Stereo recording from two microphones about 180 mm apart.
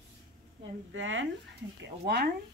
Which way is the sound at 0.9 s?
90° right.